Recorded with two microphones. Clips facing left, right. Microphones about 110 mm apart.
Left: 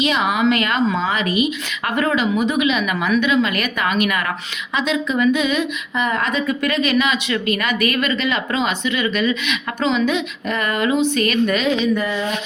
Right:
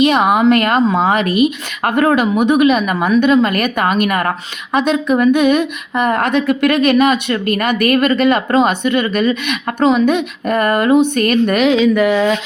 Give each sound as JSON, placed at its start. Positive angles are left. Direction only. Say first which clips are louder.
{"t": 0.0, "sound": "a woman's voice", "louder": "right 7 dB", "side_deg": -55}
{"t": 11.6, "sound": "speech", "louder": "right 7 dB", "side_deg": -90}